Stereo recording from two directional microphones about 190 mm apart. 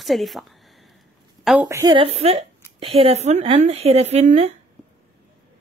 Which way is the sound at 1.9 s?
30° right (ahead or behind).